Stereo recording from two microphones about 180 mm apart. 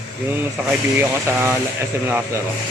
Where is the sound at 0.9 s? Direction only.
10° right (ahead or behind).